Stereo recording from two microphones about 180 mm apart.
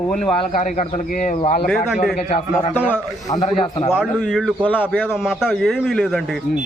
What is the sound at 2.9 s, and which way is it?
Speech, 20° left (ahead or behind).